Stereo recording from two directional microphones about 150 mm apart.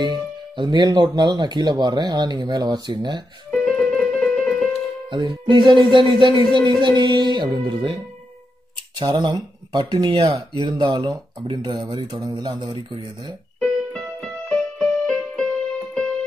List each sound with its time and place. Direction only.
0.0 s speech: 30° right (ahead or behind)
3.5 s music: centre (ahead or behind)
5.1 s speech: 30° right (ahead or behind)
13.6 s music: 5° left (ahead or behind)